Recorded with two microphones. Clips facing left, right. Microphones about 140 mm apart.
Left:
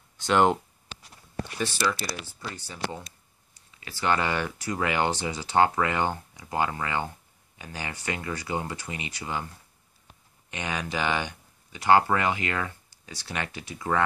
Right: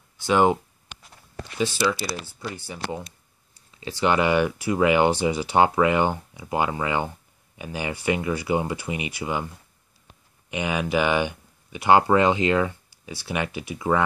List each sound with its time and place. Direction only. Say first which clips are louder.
0.3 s speech: right 2 dB; 10° right (ahead or behind)
1.6 s speech: right 5 dB; 15° right (ahead or behind)
3.8 s speech: right 5 dB; 20° right (ahead or behind)
10.5 s speech: right 7 dB; 10° right (ahead or behind)